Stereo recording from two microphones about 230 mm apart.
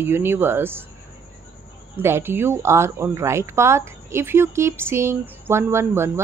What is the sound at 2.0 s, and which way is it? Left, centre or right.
Speech, centre.